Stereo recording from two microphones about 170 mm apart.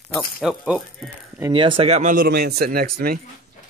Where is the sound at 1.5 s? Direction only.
30° right (ahead or behind); by 3.1 s 60° right (ahead or behind).